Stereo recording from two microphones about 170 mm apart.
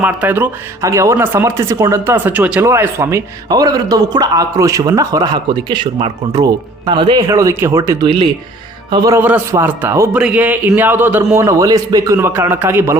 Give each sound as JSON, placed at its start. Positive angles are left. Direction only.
{"t": 0.0, "sound": "speech", "side_deg": -10}